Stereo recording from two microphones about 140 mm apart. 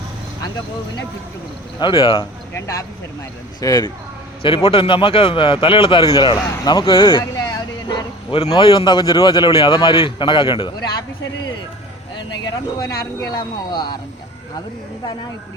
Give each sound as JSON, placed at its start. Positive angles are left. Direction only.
{"t": 1.8, "sound": "a man's voice", "side_deg": 35}
{"t": 2.5, "sound": "speech", "side_deg": 20}
{"t": 4.4, "sound": "a man's voice", "side_deg": 40}
{"t": 12.1, "sound": "a man's voice", "side_deg": 30}